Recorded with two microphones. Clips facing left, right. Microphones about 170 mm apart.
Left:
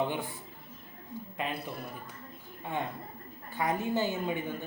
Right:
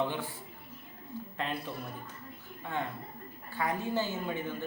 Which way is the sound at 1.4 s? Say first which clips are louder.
Left 1 dB; 10° left (ahead or behind).